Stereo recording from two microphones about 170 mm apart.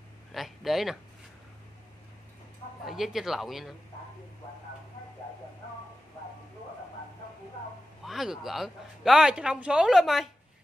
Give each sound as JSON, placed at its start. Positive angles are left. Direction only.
{"t": 0.3, "sound": "a sound", "side_deg": 0}
{"t": 2.8, "sound": "speech", "side_deg": 0}
{"t": 8.0, "sound": "speech", "side_deg": 0}